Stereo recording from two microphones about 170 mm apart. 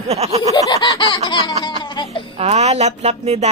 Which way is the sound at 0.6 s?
25° left (ahead or behind).